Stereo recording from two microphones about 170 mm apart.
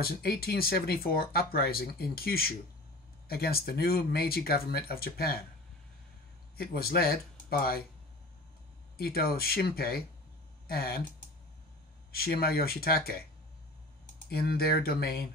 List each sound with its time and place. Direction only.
0.0 s speech: 65° left (ahead or behind)
6.5 s speech: 65° left (ahead or behind)
8.9 s speech: 65° left (ahead or behind)
12.1 s speech: 65° left (ahead or behind)
14.3 s speech: 65° left (ahead or behind)